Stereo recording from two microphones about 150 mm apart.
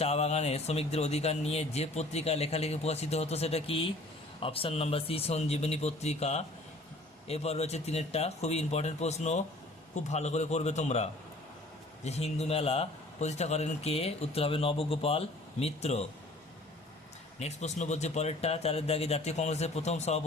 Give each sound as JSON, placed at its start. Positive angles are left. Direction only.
{"t": 0.0, "sound": "speech", "side_deg": 45}
{"t": 17.4, "sound": "speech", "side_deg": 50}